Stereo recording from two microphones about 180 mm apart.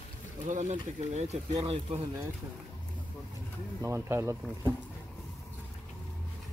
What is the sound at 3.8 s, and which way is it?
Speech, 15° right (ahead or behind).